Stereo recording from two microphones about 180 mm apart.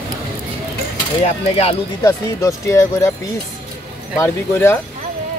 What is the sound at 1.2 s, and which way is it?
Speech, 35° left (ahead or behind).